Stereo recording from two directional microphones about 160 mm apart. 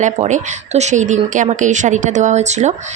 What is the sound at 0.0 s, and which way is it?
Speech, 50° right (ahead or behind).